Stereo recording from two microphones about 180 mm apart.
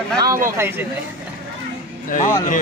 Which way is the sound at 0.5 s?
15° right (ahead or behind).